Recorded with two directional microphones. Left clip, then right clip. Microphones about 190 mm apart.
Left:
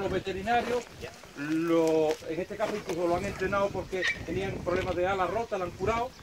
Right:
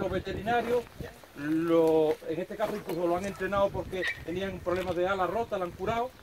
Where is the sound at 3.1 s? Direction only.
55° right (ahead or behind).